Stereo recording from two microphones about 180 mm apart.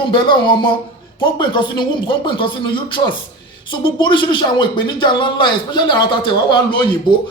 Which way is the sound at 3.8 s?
25° left (ahead or behind).